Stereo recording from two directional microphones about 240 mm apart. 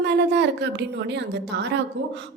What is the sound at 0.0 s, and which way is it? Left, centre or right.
A woman's voice, right.